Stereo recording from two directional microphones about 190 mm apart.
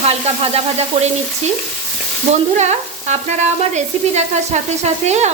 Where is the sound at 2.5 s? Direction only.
40° right (ahead or behind).